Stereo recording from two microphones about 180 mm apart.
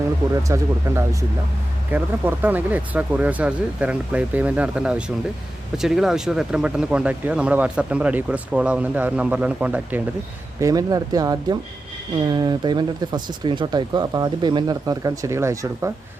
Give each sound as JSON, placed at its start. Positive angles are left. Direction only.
{"t": 0.4, "sound": "speech", "side_deg": -15}
{"t": 10.6, "sound": "speech", "side_deg": -20}